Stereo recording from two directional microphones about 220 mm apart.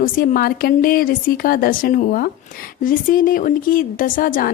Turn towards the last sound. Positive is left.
turn(degrees=40)  # may be behind; listen again after turning